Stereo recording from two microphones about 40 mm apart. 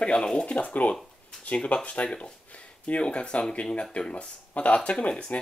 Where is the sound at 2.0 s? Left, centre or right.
Centre.